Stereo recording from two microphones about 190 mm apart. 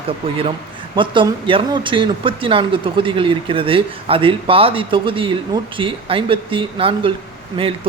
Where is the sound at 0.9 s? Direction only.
25° right (ahead or behind).